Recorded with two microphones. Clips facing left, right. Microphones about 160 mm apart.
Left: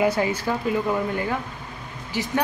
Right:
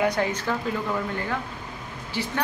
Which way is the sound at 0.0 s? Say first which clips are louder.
Left 2 dB; 10° left (ahead or behind).